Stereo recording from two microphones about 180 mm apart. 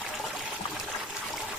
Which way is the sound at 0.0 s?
Centre (ahead or behind).